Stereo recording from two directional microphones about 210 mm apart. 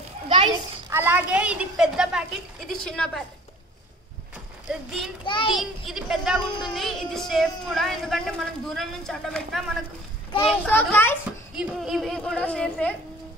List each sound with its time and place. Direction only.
0.3 s speech: 20° right (ahead or behind); by 3.1 s 5° left (ahead or behind)
4.6 s speech: centre (ahead or behind)
5.2 s a child's voice: 25° left (ahead or behind)
5.5 s a child's voice: centre (ahead or behind)
11.5 s speech: centre (ahead or behind)